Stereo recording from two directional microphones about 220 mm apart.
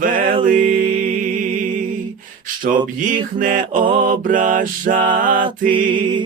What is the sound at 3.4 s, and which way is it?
Mantra, 35° right (ahead or behind).